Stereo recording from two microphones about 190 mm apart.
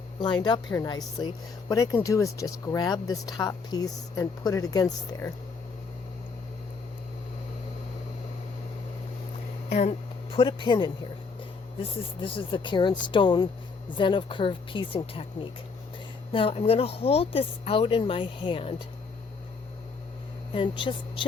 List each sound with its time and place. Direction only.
0.3 s speech: 25° left (ahead or behind)
9.6 s speech: 35° left (ahead or behind)
10.3 s speech: 25° left (ahead or behind)
20.5 s speech: 25° left (ahead or behind)